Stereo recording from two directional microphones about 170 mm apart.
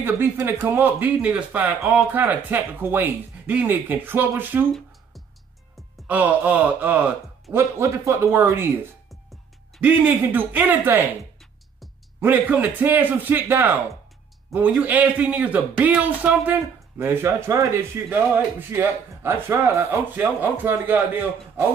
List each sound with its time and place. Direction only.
0.0 s speech: 15° right (ahead or behind)
6.0 s speech: 10° right (ahead or behind)
9.8 s speech: 10° right (ahead or behind)
12.2 s speech: 10° right (ahead or behind)